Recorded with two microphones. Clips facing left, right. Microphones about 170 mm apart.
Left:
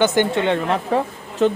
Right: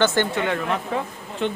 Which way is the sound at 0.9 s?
40° left (ahead or behind).